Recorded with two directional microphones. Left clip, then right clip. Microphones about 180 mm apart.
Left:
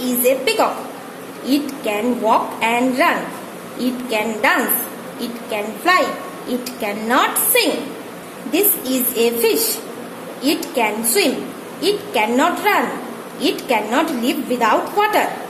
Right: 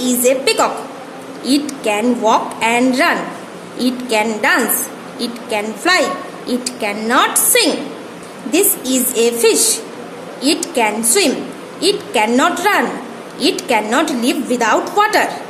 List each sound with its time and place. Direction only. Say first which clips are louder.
0.0 s a woman's voice: right 3 dB; 15° right (ahead or behind)